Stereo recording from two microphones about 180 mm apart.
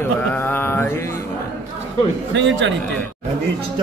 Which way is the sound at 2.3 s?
90° right.